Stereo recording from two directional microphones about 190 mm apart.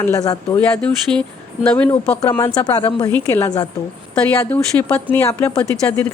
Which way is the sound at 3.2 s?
10° left (ahead or behind).